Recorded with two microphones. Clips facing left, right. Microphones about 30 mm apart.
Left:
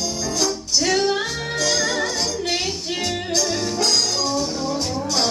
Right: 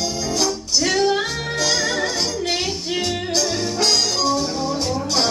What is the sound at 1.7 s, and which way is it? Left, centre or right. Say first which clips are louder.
Music: even; centre.